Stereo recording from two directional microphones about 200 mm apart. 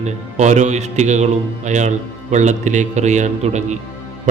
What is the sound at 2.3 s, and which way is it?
A man's voice, 35° right (ahead or behind).